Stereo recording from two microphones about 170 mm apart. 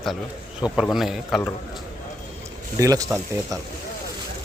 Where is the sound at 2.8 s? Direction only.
20° right (ahead or behind).